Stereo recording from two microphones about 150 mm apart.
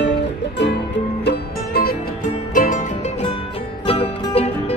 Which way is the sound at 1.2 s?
90° left.